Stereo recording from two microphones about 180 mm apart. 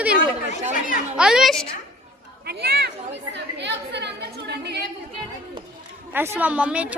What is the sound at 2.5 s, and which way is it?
Speech, 65° right (ahead or behind).